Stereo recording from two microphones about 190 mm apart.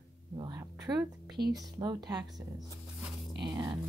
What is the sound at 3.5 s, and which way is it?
Speech, 20° right (ahead or behind).